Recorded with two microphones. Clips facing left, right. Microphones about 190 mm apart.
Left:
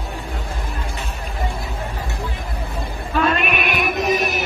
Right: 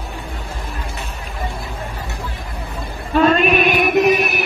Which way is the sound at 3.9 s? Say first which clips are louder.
Right 4 dB; 65° right (ahead or behind).